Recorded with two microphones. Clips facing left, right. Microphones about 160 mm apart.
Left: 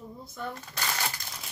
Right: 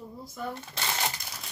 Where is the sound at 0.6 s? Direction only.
25° right (ahead or behind).